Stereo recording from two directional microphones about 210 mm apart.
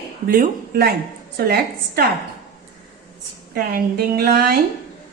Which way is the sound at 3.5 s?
45° right (ahead or behind).